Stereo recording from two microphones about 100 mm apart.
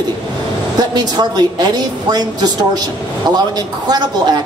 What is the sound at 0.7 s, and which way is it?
A woman's voice, 45° right (ahead or behind).